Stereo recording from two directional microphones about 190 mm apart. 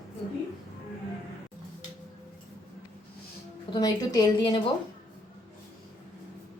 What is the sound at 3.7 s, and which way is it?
Speech, 20° left (ahead or behind).